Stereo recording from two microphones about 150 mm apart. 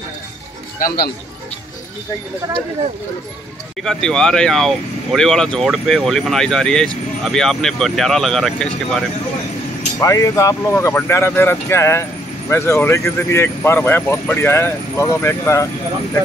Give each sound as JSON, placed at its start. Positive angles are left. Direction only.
{"t": 0.7, "sound": "speech", "side_deg": 80}
{"t": 3.8, "sound": "speech", "side_deg": 5}
{"t": 9.9, "sound": "speech", "side_deg": 20}